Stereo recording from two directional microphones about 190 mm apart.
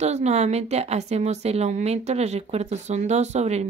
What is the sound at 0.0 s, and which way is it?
A woman's voice, 35° right (ahead or behind).